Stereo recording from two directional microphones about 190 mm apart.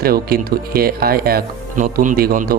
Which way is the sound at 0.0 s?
50° right (ahead or behind).